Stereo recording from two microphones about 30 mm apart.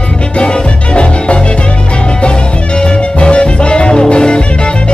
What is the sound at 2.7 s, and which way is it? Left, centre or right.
Music, left.